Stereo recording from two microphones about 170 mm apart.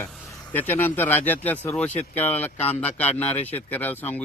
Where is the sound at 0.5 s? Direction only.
10° left (ahead or behind).